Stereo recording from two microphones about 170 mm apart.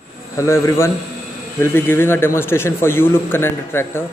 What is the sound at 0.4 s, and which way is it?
A man's voice, 15° left (ahead or behind).